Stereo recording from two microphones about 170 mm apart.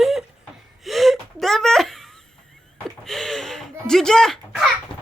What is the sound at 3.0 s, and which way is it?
Speech, 5° left (ahead or behind).